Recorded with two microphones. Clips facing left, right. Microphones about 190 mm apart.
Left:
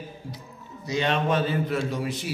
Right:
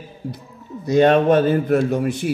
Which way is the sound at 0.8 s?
50° right (ahead or behind).